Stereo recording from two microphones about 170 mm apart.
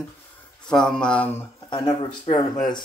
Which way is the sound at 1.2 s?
25° left (ahead or behind).